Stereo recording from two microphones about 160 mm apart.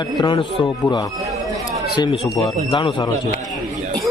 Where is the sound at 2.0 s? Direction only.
35° left (ahead or behind).